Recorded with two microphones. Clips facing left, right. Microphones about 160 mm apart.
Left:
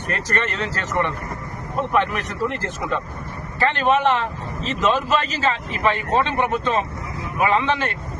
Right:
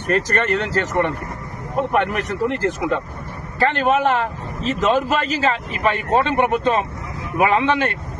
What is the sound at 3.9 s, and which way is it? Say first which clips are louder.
A man's voice: right 1 dB; 45° right (ahead or behind).